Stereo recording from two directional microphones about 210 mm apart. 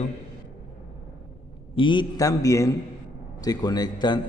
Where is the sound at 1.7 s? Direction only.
20° left (ahead or behind).